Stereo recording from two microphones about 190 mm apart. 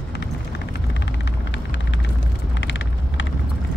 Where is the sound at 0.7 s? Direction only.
65° left (ahead or behind).